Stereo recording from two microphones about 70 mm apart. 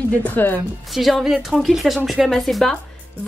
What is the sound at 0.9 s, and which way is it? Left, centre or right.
A woman's voice, centre.